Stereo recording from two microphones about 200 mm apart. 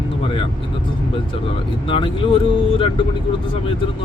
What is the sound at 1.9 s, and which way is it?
Speech, 25° left (ahead or behind).